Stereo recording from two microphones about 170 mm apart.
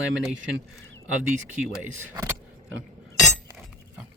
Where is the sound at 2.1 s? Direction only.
20° right (ahead or behind).